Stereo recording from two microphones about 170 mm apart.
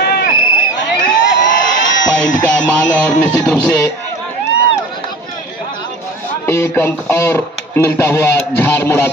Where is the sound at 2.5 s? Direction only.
5° left (ahead or behind).